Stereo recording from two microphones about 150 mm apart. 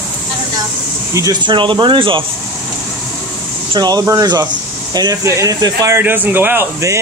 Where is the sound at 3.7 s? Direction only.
25° right (ahead or behind).